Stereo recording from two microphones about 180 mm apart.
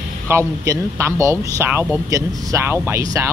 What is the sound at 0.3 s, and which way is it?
Speech, 15° right (ahead or behind).